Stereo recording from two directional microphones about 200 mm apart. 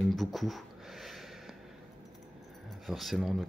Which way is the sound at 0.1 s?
Centre (ahead or behind).